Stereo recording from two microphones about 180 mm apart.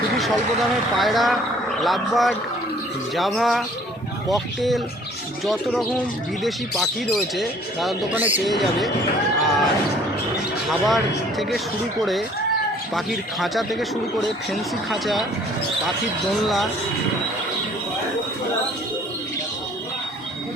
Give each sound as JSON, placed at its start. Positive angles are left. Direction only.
{"t": 0.9, "sound": "speech", "side_deg": 0}
{"t": 6.4, "sound": "speech", "side_deg": 0}
{"t": 9.4, "sound": "a sound", "side_deg": 0}
{"t": 10.7, "sound": "speech", "side_deg": 0}
{"t": 12.9, "sound": "speech", "side_deg": 0}
{"t": 16.4, "sound": "speech", "side_deg": 0}